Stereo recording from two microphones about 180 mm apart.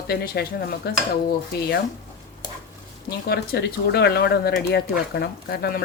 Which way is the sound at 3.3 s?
60° left (ahead or behind).